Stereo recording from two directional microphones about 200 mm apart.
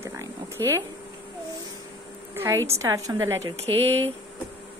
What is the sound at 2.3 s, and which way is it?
Speech, 15° right (ahead or behind).